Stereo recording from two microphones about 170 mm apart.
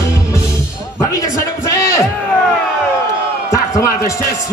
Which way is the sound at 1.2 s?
20° left (ahead or behind).